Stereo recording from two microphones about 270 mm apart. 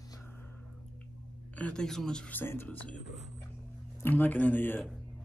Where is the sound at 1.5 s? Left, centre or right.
Centre.